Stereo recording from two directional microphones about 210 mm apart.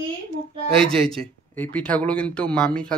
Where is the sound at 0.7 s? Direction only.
5° left (ahead or behind).